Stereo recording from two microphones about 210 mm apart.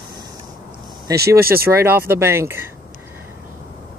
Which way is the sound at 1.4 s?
45° right (ahead or behind).